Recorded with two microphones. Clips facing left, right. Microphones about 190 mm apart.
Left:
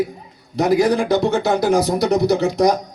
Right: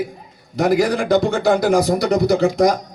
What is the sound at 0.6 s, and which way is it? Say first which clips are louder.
Speech: left 1 dB; 60° right (ahead or behind).